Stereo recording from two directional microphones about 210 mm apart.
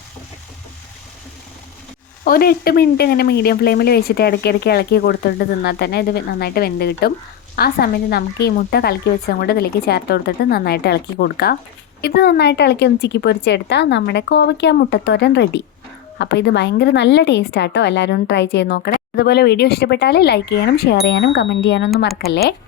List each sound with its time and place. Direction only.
2.2 s a woman's voice: 45° left (ahead or behind)